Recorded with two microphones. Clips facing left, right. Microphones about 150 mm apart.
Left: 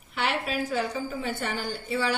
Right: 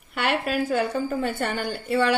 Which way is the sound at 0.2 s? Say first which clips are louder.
Right 4 dB; 55° right (ahead or behind).